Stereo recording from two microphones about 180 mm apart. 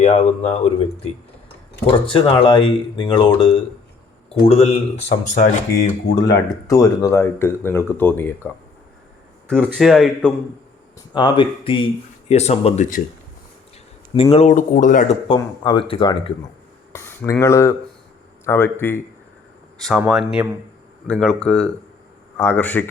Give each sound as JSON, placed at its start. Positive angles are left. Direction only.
{"t": 0.0, "sound": "speech", "side_deg": 35}
{"t": 1.9, "sound": "speech", "side_deg": 30}
{"t": 6.5, "sound": "speech", "side_deg": 15}
{"t": 9.7, "sound": "speech", "side_deg": 0}
{"t": 11.1, "sound": "speech", "side_deg": 25}
{"t": 14.1, "sound": "speech", "side_deg": 30}
{"t": 15.3, "sound": "speech", "side_deg": 25}
{"t": 16.9, "sound": "speech", "side_deg": 15}
{"t": 20.0, "sound": "speech", "side_deg": -5}